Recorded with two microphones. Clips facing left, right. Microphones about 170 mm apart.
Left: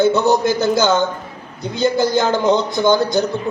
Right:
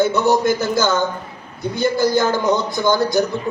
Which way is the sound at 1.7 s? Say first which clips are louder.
Left 1 dB; 20° left (ahead or behind).